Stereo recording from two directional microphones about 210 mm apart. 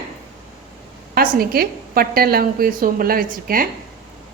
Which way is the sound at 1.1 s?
45° right (ahead or behind).